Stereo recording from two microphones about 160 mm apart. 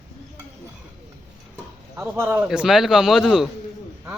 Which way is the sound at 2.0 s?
15° right (ahead or behind).